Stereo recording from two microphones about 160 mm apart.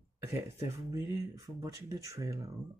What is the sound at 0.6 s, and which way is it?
Speech, 20° right (ahead or behind).